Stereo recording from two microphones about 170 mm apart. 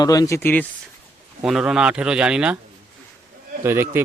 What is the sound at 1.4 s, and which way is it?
Speech, 5° right (ahead or behind).